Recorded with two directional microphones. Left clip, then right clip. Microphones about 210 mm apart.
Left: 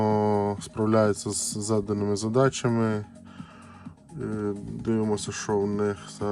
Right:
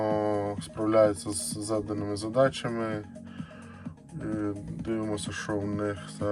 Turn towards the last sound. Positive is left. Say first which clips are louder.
# left 3 dB
turn(degrees=20)  # may be behind; listen again after turning